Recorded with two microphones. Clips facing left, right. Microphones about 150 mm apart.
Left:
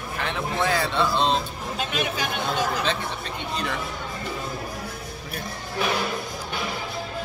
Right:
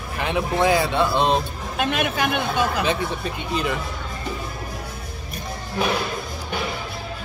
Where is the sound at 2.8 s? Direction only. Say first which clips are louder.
Right 4 dB; 10° right (ahead or behind).